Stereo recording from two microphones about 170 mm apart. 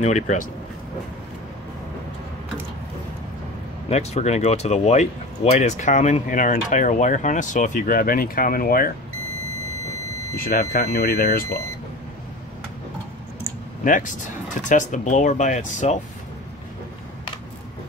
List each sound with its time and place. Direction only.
0.0 s speech: 45° left (ahead or behind)
3.9 s speech: 40° left (ahead or behind); by 8.9 s 60° left (ahead or behind)
10.4 s speech: 60° left (ahead or behind)
13.8 s speech: 50° left (ahead or behind)